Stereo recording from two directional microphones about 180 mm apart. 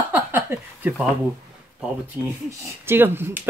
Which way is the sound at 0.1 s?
10° right (ahead or behind).